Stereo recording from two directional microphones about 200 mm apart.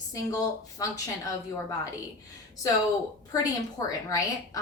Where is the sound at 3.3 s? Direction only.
15° left (ahead or behind).